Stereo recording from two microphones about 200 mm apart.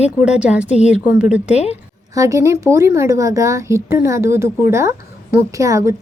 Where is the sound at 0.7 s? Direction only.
35° left (ahead or behind).